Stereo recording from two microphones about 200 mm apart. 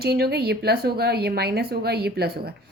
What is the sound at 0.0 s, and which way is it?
A woman's voice, 50° right (ahead or behind).